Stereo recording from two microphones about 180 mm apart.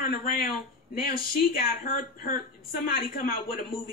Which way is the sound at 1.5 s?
50° left (ahead or behind).